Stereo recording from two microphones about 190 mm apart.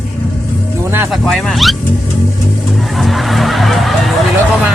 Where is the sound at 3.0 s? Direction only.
Centre (ahead or behind).